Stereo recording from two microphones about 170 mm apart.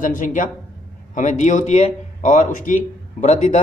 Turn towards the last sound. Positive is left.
turn(degrees=45)  # may be behind; listen again after turning